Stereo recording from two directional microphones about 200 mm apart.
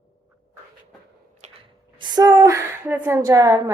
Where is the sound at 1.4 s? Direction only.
35° right (ahead or behind).